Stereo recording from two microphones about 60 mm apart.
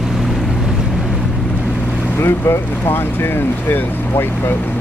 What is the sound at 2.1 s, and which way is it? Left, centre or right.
Speech, left.